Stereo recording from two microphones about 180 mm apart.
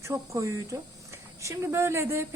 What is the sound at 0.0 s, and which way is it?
Speech, 15° right (ahead or behind).